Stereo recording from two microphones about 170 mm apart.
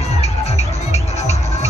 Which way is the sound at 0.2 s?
40° left (ahead or behind).